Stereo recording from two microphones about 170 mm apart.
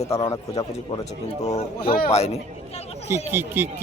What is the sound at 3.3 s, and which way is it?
Speech, 10° right (ahead or behind).